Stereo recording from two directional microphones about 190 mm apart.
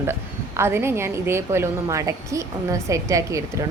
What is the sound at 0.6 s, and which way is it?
A woman's voice, 15° right (ahead or behind).